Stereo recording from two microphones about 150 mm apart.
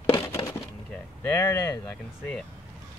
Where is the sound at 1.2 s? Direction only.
20° left (ahead or behind).